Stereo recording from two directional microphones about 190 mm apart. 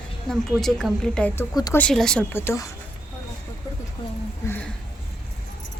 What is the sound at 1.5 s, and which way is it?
Speech, 20° left (ahead or behind).